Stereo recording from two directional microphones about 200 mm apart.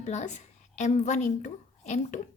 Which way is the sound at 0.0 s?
35° left (ahead or behind).